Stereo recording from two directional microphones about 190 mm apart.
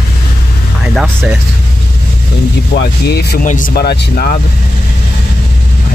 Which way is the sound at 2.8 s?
60° left (ahead or behind).